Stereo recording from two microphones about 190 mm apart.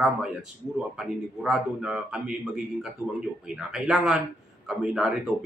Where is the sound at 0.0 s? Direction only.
5° right (ahead or behind).